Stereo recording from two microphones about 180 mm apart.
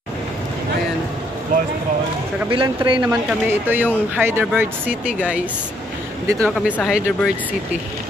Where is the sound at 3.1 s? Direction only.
10° right (ahead or behind).